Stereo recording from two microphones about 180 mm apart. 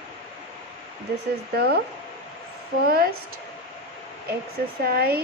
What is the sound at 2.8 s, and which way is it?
Speech, 55° right (ahead or behind).